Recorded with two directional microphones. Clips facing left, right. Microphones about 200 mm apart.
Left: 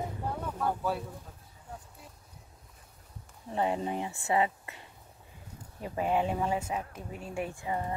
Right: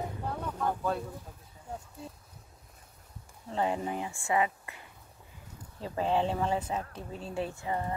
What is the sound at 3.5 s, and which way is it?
Speech, 20° left (ahead or behind).